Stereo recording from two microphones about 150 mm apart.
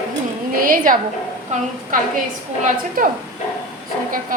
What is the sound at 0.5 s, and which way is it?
A woman's voice, 70° right (ahead or behind).